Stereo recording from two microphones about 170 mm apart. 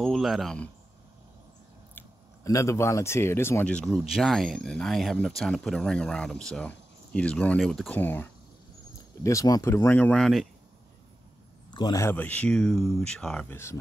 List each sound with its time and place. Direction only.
0.0 s speech: centre (ahead or behind)
2.0 s speech: 20° left (ahead or behind); by 10.5 s centre (ahead or behind)
11.7 s speech: 25° left (ahead or behind)